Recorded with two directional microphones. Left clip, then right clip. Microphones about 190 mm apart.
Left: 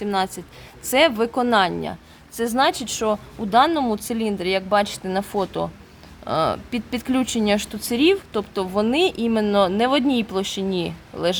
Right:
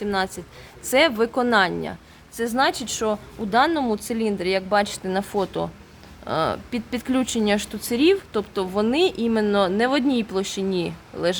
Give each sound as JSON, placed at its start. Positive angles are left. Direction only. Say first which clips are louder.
{"t": 0.0, "sound": "a woman's voice", "louder": "left 1 dB", "side_deg": 10}